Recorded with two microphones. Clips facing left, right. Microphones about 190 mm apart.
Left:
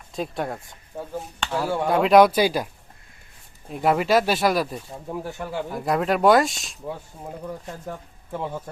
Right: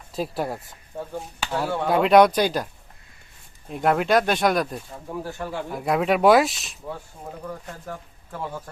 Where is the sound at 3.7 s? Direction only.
Centre (ahead or behind).